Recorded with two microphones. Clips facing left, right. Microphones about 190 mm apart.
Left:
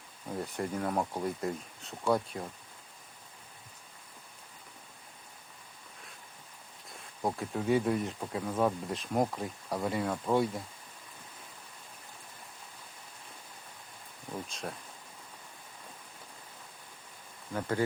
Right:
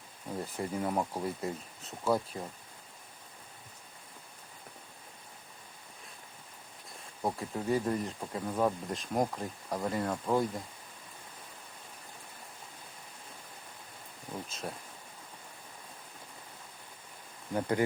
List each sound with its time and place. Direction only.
0.4 s speech: centre (ahead or behind)
7.2 s speech: centre (ahead or behind)
14.4 s speech: centre (ahead or behind)
17.5 s speech: 20° right (ahead or behind)